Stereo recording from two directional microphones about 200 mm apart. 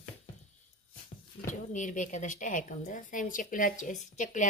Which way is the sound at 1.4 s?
40° left (ahead or behind).